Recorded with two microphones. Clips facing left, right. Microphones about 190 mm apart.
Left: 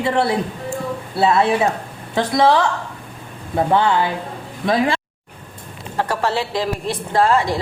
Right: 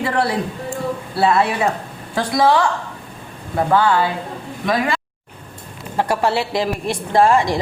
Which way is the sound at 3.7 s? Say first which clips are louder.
Right 2 dB; 20° left (ahead or behind).